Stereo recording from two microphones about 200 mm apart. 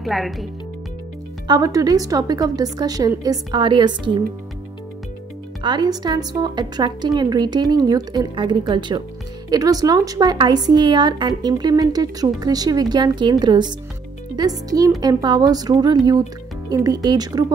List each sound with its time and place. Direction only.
0.0 s speech: centre (ahead or behind)
1.5 s speech: 15° right (ahead or behind)
5.6 s speech: 20° right (ahead or behind)